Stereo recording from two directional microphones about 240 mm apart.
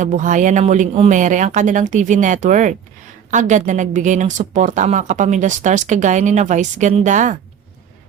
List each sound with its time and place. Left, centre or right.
0.0 s speech: right